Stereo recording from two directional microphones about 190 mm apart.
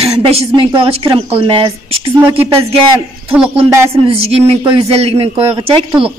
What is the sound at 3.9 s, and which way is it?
Speech, 30° right (ahead or behind).